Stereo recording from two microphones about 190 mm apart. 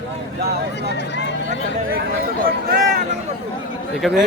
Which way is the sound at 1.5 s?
50° right (ahead or behind).